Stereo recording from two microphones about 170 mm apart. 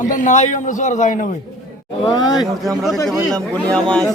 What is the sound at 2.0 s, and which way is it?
Speech, 25° left (ahead or behind).